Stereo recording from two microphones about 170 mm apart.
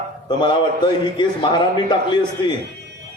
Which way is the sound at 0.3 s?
25° left (ahead or behind).